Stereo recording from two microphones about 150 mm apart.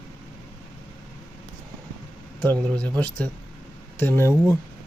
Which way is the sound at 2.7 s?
10° left (ahead or behind).